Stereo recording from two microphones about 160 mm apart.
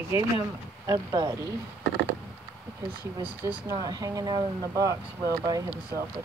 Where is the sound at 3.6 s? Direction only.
25° right (ahead or behind).